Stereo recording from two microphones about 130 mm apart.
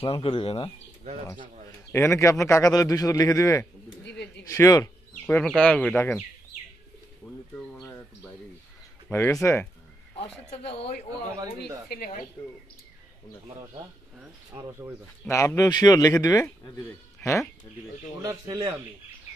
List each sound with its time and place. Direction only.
0.0 s speech: 45° left (ahead or behind)
1.9 s a man's voice: 20° left (ahead or behind)
5.2 s speech: 15° left (ahead or behind)
7.2 s bird: 15° left (ahead or behind)
7.8 s a sound: 15° left (ahead or behind)
9.1 s a man's voice: 20° left (ahead or behind)
10.1 s speech: 50° left (ahead or behind)
14.5 s speech: 20° right (ahead or behind)
15.2 s a man's voice: 20° left (ahead or behind)
18.2 s speech: 25° right (ahead or behind)